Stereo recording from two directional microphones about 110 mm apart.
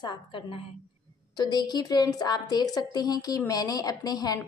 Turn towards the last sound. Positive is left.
turn(degrees=35)  # may be behind; listen again after turning